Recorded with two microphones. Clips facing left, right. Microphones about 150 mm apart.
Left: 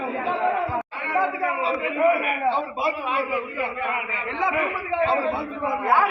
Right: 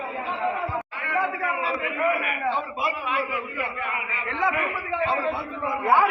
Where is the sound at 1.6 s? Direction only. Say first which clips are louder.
Left 6 dB; 30° left (ahead or behind).